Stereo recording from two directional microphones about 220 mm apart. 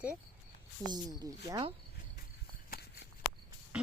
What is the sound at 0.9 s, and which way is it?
Speech, 20° right (ahead or behind).